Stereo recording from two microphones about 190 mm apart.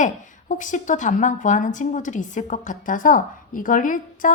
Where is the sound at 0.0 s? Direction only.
40° left (ahead or behind).